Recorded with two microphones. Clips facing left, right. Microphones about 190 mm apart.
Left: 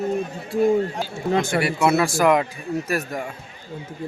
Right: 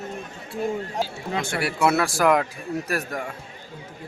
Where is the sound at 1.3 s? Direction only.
40° left (ahead or behind).